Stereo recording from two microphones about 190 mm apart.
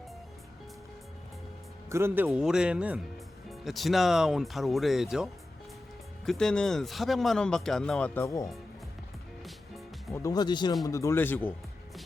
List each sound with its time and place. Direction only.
1.9 s speech: 15° right (ahead or behind); by 8.4 s 15° left (ahead or behind)
10.1 s speech: 15° left (ahead or behind)